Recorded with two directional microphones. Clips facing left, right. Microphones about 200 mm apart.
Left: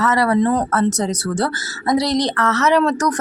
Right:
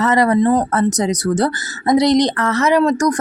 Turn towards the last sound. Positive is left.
turn(degrees=-10)  # may be behind; listen again after turning